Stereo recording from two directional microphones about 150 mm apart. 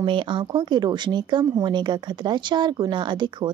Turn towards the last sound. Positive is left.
turn(degrees=-30)  # may be behind; listen again after turning